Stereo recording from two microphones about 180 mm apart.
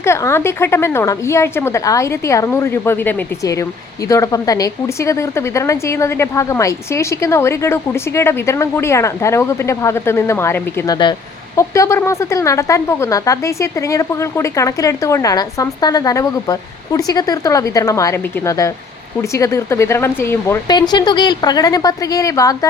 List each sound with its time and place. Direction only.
0.0 s a woman's voice: 15° left (ahead or behind)
10.9 s a woman's voice: 25° left (ahead or behind)